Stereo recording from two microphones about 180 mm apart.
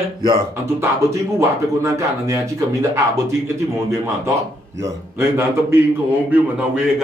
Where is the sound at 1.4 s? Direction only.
15° right (ahead or behind).